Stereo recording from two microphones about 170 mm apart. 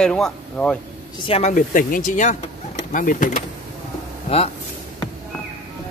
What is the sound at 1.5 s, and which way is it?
Speech, 55° left (ahead or behind).